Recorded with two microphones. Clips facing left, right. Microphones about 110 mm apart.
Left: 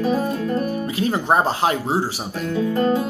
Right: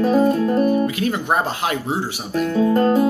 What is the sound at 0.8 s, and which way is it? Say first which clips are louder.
Speech: even; 30° left (ahead or behind).